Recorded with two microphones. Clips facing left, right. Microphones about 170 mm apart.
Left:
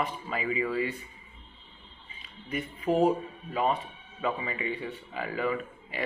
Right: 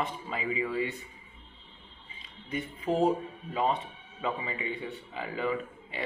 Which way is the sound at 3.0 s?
20° right (ahead or behind).